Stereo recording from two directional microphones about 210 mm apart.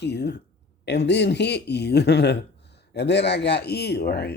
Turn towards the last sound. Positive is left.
turn(degrees=50)  # may be behind; listen again after turning